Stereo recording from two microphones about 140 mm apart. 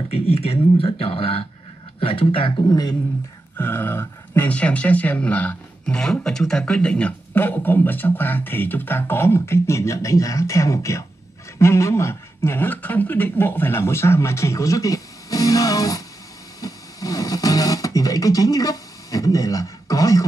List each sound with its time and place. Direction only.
0.1 s speech: 45° left (ahead or behind)
3.5 s speech: 15° left (ahead or behind)